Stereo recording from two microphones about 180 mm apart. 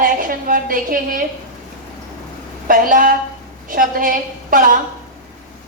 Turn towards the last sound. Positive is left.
turn(degrees=-50)  # may be behind; listen again after turning